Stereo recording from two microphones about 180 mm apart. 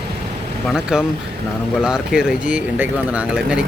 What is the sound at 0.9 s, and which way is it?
Speech, 5° right (ahead or behind).